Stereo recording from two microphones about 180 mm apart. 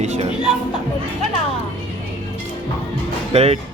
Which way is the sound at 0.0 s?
40° right (ahead or behind).